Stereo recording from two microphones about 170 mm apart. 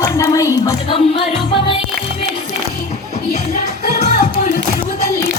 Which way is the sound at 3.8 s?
65° left (ahead or behind).